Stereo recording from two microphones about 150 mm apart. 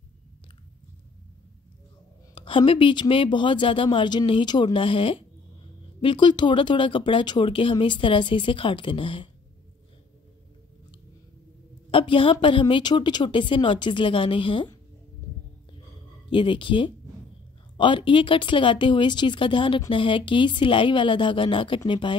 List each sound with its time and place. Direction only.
2.3 s speech: 35° left (ahead or behind)
11.9 s speech: 35° left (ahead or behind)
16.3 s speech: 35° left (ahead or behind)